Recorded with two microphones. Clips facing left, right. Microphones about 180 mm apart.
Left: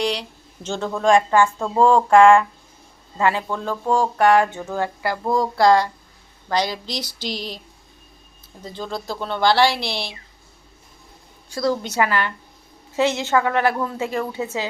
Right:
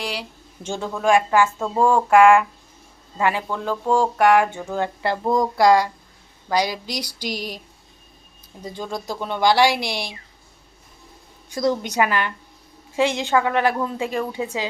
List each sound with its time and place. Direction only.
0.0 s a sound: 5° right (ahead or behind)
0.9 s speech: 5° right (ahead or behind)
8.6 s speech: 15° right (ahead or behind)
11.5 s speech: 20° right (ahead or behind)